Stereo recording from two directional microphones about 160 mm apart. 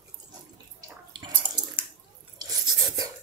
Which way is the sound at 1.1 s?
30° right (ahead or behind).